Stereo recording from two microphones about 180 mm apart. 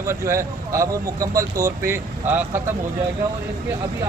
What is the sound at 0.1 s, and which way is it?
Speech, 15° right (ahead or behind).